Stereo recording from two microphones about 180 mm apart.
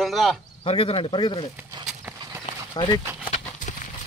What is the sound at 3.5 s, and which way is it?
Clip-clop, 45° left (ahead or behind).